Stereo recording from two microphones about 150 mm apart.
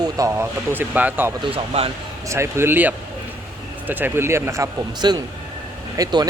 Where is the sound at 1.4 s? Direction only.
40° right (ahead or behind).